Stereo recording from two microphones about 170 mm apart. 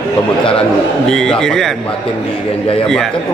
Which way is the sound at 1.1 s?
5° left (ahead or behind).